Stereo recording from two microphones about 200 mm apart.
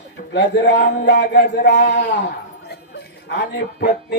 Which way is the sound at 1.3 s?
50° left (ahead or behind).